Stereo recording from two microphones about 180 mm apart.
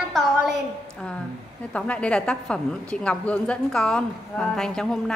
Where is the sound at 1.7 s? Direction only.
5° left (ahead or behind).